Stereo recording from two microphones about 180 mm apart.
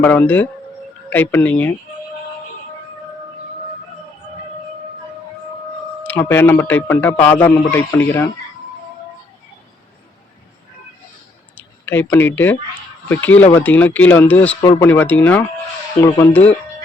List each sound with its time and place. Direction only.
0.0 s speech: 10° left (ahead or behind)
6.0 s speech: 10° left (ahead or behind)
11.5 s speech: 10° left (ahead or behind)
14.6 s speech: 20° left (ahead or behind)
16.0 s speech: 20° left (ahead or behind)